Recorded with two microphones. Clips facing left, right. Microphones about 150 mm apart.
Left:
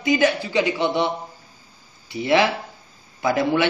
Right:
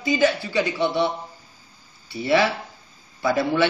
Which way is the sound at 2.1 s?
20° left (ahead or behind).